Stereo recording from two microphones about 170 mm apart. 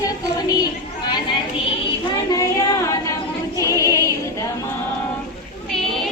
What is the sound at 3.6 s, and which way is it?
Music, 20° left (ahead or behind).